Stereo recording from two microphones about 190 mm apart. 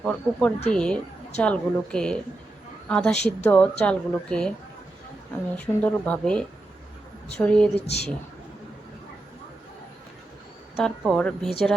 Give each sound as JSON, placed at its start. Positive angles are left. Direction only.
{"t": 0.0, "sound": "speech", "side_deg": 5}
{"t": 5.5, "sound": "speech", "side_deg": 5}
{"t": 7.8, "sound": "speech", "side_deg": 35}
{"t": 10.8, "sound": "speech", "side_deg": 0}